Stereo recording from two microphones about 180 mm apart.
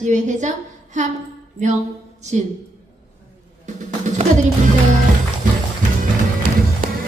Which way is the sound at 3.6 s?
40° right (ahead or behind).